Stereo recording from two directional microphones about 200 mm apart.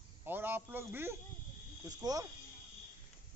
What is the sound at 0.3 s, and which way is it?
A man's voice, 10° right (ahead or behind).